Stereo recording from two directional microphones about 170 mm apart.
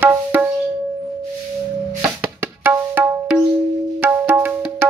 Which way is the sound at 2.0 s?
15° right (ahead or behind).